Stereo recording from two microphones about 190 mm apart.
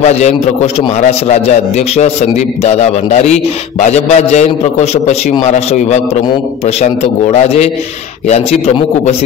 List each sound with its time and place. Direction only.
0.1 s a man's voice: 35° left (ahead or behind)